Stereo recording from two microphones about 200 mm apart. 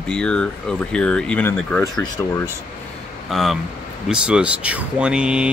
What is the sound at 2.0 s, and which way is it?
Speech, 15° left (ahead or behind).